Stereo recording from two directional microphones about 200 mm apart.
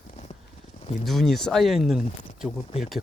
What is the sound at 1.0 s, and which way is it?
Speech, centre (ahead or behind).